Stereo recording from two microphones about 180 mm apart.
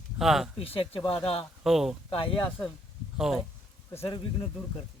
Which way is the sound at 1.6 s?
Centre (ahead or behind).